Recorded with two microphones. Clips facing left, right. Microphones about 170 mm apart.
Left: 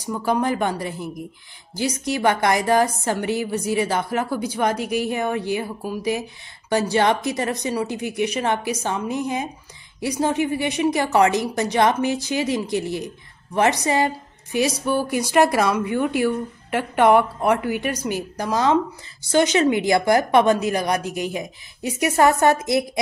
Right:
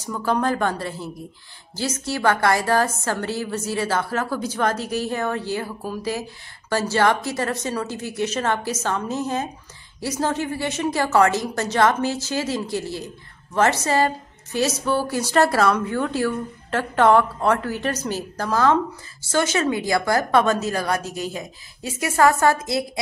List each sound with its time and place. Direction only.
0.0 s a woman's voice: 15° left (ahead or behind)